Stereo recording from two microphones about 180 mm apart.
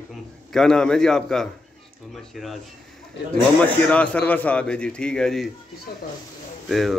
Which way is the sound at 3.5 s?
5° left (ahead or behind).